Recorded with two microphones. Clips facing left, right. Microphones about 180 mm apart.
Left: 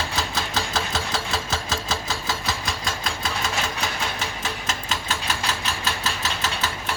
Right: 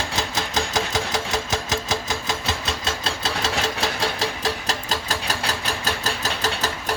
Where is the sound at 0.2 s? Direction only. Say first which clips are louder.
Right 3 dB; 20° right (ahead or behind).